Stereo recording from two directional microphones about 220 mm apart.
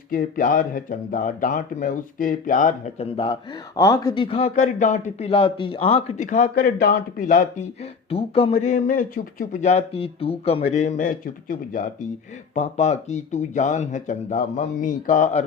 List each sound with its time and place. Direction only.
0.1 s speech: 40° left (ahead or behind)
3.8 s speech: 15° left (ahead or behind); by 7.7 s 35° left (ahead or behind)
8.1 s speech: 25° left (ahead or behind)